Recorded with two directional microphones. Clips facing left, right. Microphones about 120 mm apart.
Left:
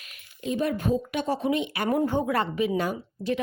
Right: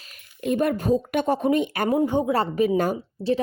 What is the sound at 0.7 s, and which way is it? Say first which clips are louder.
Speech: right 4 dB; 40° right (ahead or behind).